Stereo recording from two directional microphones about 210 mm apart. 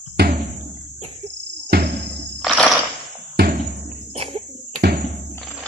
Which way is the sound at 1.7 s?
50° right (ahead or behind).